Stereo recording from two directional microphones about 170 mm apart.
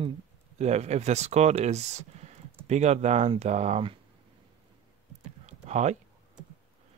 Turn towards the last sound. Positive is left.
turn(degrees=-40)  # may be behind; listen again after turning